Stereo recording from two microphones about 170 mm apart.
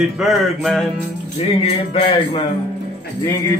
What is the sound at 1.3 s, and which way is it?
Speech, 35° left (ahead or behind).